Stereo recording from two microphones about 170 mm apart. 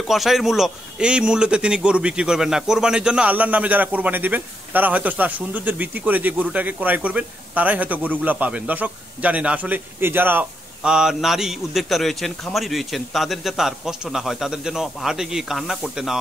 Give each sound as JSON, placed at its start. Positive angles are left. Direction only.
{"t": 0.0, "sound": "a man's voice", "side_deg": 0}